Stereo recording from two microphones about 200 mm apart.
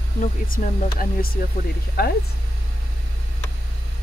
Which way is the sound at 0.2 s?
45° left (ahead or behind).